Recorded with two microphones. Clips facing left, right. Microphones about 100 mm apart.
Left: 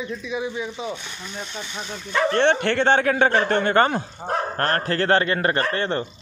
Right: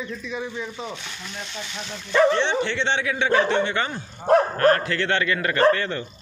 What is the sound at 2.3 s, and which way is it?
A man's voice, 55° left (ahead or behind).